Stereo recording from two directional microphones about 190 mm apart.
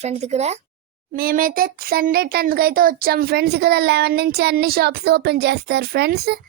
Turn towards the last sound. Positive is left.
turn(degrees=-55)  # may be behind; listen again after turning